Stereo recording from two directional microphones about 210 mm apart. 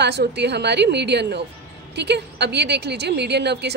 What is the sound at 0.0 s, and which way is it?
A woman's voice, 50° right (ahead or behind).